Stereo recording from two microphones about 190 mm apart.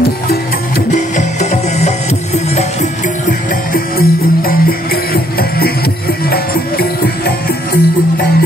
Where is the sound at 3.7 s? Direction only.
50° left (ahead or behind).